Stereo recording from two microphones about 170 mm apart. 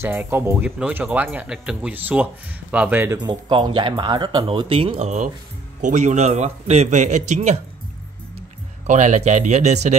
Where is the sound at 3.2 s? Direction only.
25° right (ahead or behind); by 7.5 s 45° right (ahead or behind).